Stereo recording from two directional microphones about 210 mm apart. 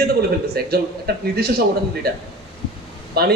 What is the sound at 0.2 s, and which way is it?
A man's voice, 50° right (ahead or behind).